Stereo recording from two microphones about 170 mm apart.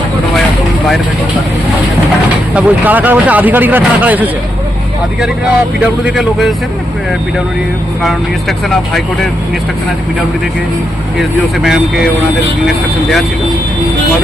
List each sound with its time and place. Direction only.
2.6 s speech: 10° right (ahead or behind)
5.8 s speech: 5° right (ahead or behind)
8.0 s speech: centre (ahead or behind)
11.2 s speech: centre (ahead or behind)